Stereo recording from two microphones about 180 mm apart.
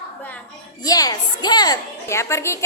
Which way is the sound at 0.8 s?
20° left (ahead or behind).